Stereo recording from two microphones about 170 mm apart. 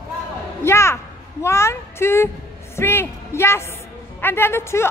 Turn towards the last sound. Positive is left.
turn(degrees=15)  # may be behind; listen again after turning